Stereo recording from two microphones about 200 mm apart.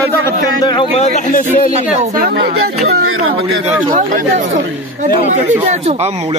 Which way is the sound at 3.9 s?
40° right (ahead or behind).